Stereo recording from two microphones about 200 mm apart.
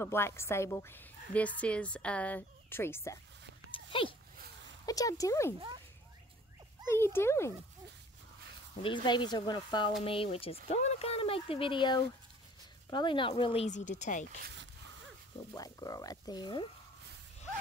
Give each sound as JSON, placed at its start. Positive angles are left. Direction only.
{"t": 0.0, "sound": "a woman's voice", "side_deg": 10}
{"t": 3.7, "sound": "dog", "side_deg": 25}
{"t": 4.8, "sound": "a woman's voice", "side_deg": 15}
{"t": 6.9, "sound": "a woman's voice", "side_deg": 10}
{"t": 8.8, "sound": "speech", "side_deg": 25}
{"t": 14.4, "sound": "dog", "side_deg": -60}
{"t": 15.5, "sound": "a woman's voice", "side_deg": 20}